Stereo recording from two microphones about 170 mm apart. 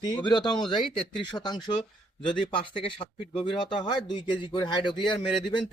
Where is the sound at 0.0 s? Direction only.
25° left (ahead or behind).